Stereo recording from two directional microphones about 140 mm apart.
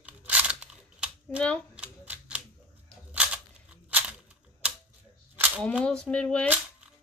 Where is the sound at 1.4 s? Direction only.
10° left (ahead or behind).